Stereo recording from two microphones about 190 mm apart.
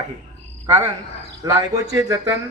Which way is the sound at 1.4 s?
15° right (ahead or behind).